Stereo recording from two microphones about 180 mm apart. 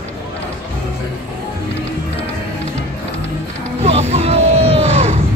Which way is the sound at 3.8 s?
35° right (ahead or behind).